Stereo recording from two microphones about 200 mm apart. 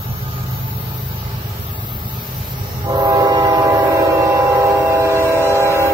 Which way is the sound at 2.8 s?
20° right (ahead or behind).